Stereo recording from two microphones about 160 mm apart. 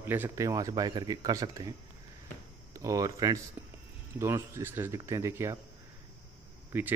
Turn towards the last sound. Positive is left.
turn(degrees=-15)  # may be behind; listen again after turning